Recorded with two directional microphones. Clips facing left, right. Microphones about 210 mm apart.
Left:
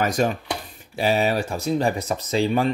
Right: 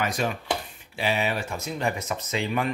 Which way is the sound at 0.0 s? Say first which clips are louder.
Left 6 dB; 40° left (ahead or behind).